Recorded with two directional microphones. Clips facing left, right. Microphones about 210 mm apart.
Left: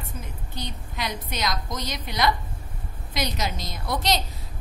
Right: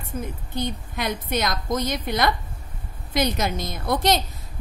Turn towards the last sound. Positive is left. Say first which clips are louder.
# right 4 dB
turn(degrees=-50)  # may be behind; listen again after turning